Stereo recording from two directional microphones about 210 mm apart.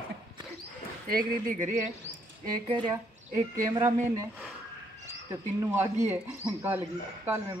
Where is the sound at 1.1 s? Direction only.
40° right (ahead or behind).